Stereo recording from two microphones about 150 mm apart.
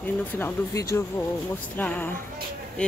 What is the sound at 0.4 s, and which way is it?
A woman's voice, 20° left (ahead or behind).